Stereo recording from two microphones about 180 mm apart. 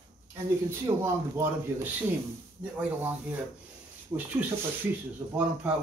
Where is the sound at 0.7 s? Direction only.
15° right (ahead or behind).